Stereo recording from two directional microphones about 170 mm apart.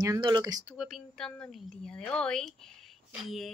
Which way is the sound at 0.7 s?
Centre (ahead or behind).